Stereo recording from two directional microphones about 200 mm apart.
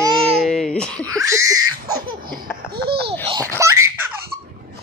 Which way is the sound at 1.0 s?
15° right (ahead or behind).